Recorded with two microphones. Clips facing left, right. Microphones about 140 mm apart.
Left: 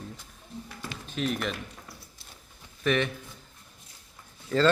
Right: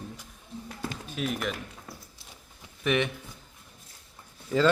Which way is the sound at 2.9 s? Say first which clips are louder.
Even; 15° right (ahead or behind).